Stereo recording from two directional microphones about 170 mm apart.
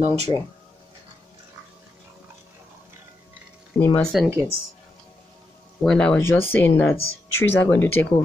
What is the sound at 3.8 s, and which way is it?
Speech, 10° left (ahead or behind).